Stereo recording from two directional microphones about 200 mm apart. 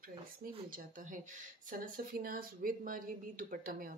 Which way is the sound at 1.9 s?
45° right (ahead or behind).